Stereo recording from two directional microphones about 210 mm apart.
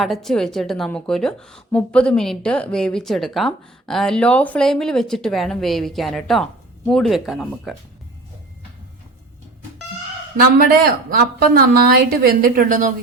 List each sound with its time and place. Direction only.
0.0 s a woman's voice: centre (ahead or behind)
10.7 s a woman's voice: 45° right (ahead or behind)